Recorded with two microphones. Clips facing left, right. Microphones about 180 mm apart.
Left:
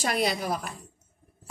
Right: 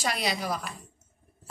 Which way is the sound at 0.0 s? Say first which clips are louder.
Left 3 dB; 50° left (ahead or behind).